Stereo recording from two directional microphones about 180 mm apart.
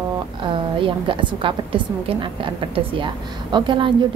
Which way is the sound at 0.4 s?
30° right (ahead or behind).